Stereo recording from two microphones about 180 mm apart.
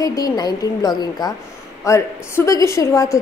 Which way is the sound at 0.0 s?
20° left (ahead or behind).